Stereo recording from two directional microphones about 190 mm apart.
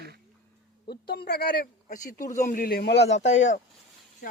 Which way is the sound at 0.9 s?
55° left (ahead or behind).